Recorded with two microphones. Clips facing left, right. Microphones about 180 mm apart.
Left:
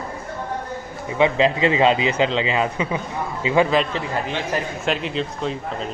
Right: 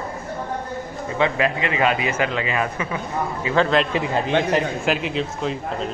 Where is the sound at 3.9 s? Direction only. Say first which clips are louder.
Right 3 dB; 15° right (ahead or behind).